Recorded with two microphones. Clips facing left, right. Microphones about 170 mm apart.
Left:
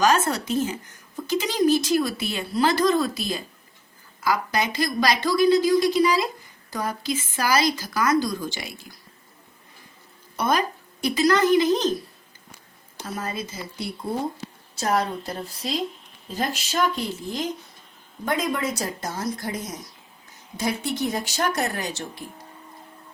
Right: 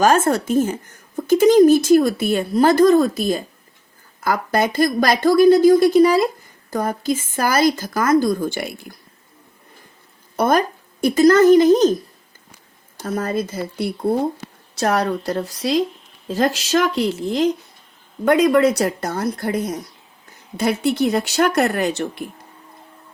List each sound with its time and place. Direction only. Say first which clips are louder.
0.0 s speech: right 5 dB; 50° right (ahead or behind)
10.3 s speech: right 6 dB; 55° right (ahead or behind)
13.0 s speech: right 9 dB; 50° right (ahead or behind)